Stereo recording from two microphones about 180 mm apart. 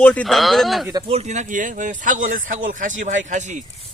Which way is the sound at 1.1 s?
40° right (ahead or behind).